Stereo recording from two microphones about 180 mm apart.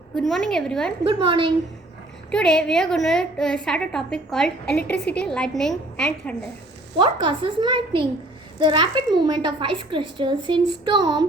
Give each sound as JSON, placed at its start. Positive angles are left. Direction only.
{"t": 0.2, "sound": "a woman's voice", "side_deg": 0}
{"t": 1.0, "sound": "a woman's voice", "side_deg": -30}
{"t": 2.3, "sound": "a woman's voice", "side_deg": 5}
{"t": 7.0, "sound": "a woman's voice", "side_deg": -30}